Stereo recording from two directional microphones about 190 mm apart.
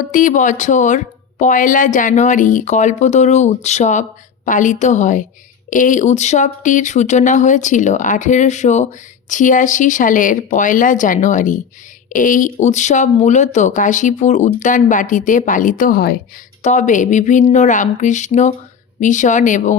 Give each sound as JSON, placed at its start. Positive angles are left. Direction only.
{"t": 0.0, "sound": "speech", "side_deg": 45}
{"t": 16.6, "sound": "speech", "side_deg": 40}